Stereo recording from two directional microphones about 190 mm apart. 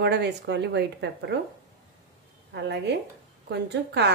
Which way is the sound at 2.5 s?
65° right (ahead or behind).